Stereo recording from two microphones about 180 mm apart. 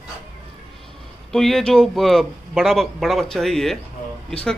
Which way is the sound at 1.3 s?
Centre (ahead or behind).